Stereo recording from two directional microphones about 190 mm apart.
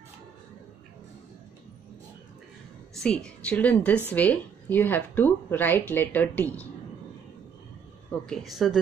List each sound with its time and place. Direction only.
3.0 s speech: 5° left (ahead or behind)
8.3 s speech: centre (ahead or behind)